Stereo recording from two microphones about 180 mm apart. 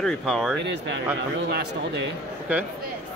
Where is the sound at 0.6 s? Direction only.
75° right (ahead or behind).